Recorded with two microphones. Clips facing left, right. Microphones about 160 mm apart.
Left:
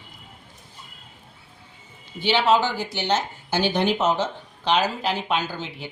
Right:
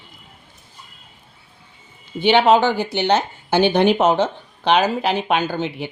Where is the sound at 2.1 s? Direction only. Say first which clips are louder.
Right 6 dB; 60° right (ahead or behind).